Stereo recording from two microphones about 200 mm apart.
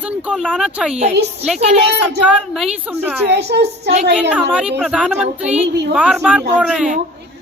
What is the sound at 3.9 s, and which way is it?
Speech, 35° right (ahead or behind).